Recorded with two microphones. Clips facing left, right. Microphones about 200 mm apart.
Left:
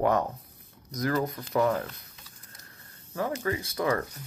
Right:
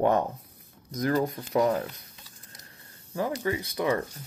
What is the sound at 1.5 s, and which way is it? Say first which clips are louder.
Speech: right 1 dB; 35° right (ahead or behind).